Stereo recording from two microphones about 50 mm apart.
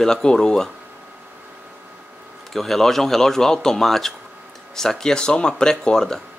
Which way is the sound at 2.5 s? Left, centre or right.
Centre.